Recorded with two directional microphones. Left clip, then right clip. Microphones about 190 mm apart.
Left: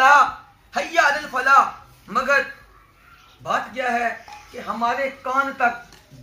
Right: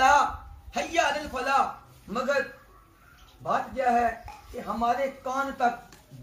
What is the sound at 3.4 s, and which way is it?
Speech, 5° left (ahead or behind).